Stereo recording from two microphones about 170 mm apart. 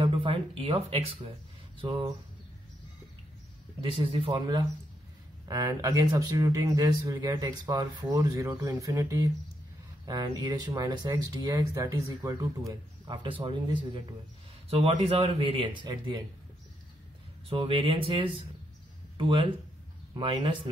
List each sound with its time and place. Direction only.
0.0 s speech: 30° right (ahead or behind)
3.8 s speech: 30° right (ahead or behind)
17.5 s speech: 30° right (ahead or behind)